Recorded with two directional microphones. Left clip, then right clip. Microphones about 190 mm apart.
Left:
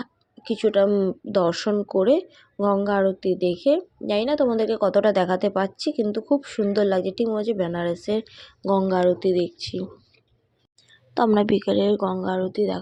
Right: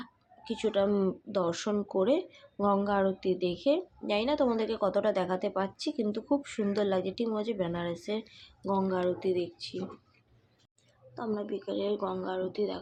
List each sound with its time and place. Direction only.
0.0 s a sound: 30° left (ahead or behind)
1.3 s speech: 35° left (ahead or behind)
11.1 s speech: 50° left (ahead or behind)